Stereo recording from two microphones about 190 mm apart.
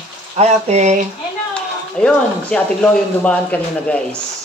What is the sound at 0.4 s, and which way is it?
Speech, 35° right (ahead or behind).